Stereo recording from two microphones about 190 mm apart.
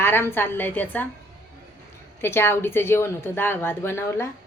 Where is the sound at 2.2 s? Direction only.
10° left (ahead or behind).